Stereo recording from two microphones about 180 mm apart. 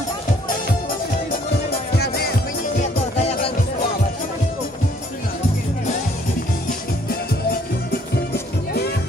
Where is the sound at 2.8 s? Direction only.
35° left (ahead or behind).